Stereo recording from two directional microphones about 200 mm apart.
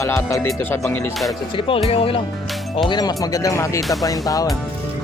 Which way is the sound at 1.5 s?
25° left (ahead or behind).